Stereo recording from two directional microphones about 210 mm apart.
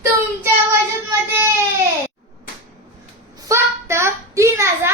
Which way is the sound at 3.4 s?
15° right (ahead or behind).